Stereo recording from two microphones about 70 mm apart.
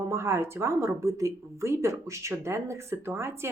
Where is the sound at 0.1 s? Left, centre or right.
Right.